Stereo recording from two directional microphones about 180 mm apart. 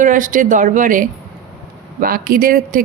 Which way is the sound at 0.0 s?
45° right (ahead or behind).